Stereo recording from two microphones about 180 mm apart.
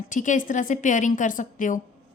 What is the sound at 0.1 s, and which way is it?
A woman's voice, 45° left (ahead or behind).